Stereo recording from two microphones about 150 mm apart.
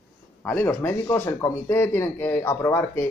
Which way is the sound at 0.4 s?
10° left (ahead or behind).